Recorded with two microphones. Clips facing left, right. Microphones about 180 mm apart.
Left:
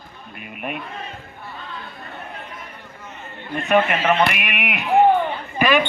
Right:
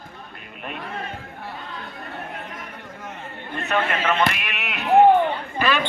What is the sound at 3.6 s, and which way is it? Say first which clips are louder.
A man's voice: left 5 dB; 15° left (ahead or behind).